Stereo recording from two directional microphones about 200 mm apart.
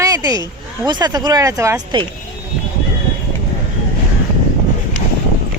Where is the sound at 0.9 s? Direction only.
20° right (ahead or behind).